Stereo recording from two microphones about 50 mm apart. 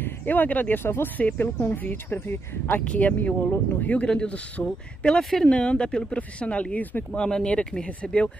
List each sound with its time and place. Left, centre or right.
0.0 s speech: left
0.8 s speech: left
1.1 s speech: left
2.8 s speech: left
4.1 s a man's voice: centre; by 7.1 s left
7.1 s speech: centre